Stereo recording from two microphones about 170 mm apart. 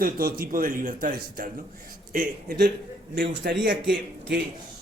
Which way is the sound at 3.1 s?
90° right.